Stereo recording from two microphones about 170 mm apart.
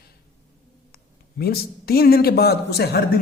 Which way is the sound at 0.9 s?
65° left (ahead or behind).